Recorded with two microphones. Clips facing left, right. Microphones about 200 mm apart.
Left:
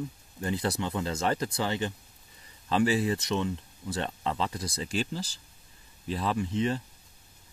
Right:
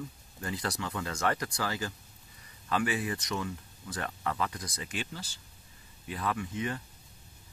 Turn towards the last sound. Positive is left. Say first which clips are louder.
# left 6 dB
turn(degrees=30)  # may be behind; listen again after turning